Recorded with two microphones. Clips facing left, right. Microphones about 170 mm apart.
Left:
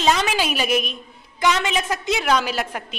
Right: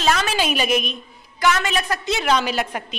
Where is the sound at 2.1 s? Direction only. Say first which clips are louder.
Right 2 dB; 5° left (ahead or behind).